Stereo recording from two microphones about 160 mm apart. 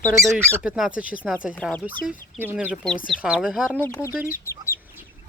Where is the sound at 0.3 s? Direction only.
10° right (ahead or behind).